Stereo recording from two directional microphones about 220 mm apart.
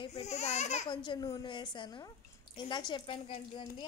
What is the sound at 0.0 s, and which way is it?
Baby cry, 30° left (ahead or behind).